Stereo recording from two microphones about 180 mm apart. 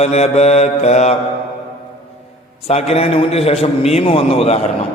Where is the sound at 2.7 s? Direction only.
35° left (ahead or behind).